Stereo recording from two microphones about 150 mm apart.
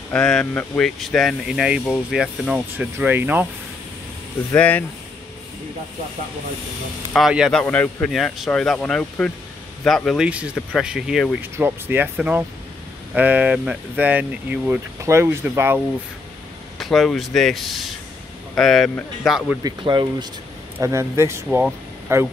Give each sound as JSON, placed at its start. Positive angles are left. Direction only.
{"t": 0.1, "sound": "speech", "side_deg": 5}
{"t": 4.6, "sound": "speech", "side_deg": 10}
{"t": 7.2, "sound": "speech", "side_deg": -5}
{"t": 7.6, "sound": "speech", "side_deg": 10}
{"t": 11.5, "sound": "speech", "side_deg": -15}
{"t": 16.7, "sound": "speech", "side_deg": 0}
{"t": 19.6, "sound": "speech", "side_deg": -30}
{"t": 20.8, "sound": "speech", "side_deg": -20}
{"t": 21.5, "sound": "speech", "side_deg": -5}
{"t": 22.1, "sound": "speech", "side_deg": -15}